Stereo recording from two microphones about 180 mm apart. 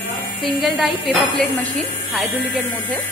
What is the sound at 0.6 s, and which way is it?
Speech, centre (ahead or behind).